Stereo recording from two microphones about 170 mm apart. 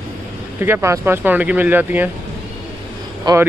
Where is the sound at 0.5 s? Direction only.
15° right (ahead or behind).